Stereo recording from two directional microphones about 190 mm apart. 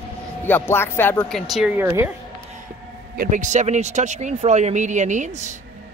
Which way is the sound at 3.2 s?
40° right (ahead or behind).